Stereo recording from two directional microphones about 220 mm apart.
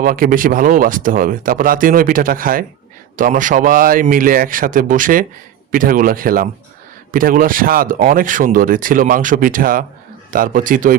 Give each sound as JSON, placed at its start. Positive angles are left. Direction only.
{"t": 0.0, "sound": "speech", "side_deg": -40}